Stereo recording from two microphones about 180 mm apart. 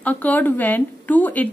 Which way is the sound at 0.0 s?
10° left (ahead or behind).